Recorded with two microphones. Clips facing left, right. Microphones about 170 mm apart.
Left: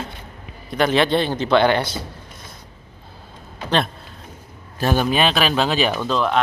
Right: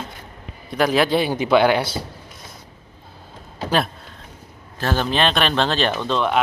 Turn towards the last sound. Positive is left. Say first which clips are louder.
# even
turn(degrees=0)  # may be behind; listen again after turning